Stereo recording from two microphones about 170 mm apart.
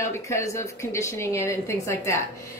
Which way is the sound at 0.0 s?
15° left (ahead or behind).